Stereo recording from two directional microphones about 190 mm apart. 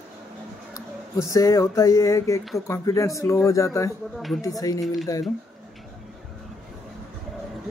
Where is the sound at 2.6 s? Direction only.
15° left (ahead or behind).